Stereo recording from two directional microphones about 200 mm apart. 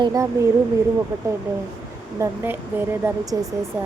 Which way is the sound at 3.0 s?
15° right (ahead or behind).